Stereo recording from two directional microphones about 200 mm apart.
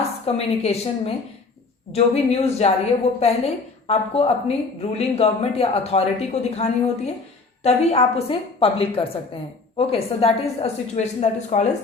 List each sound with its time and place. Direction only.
0.3 s a woman's voice: 30° left (ahead or behind)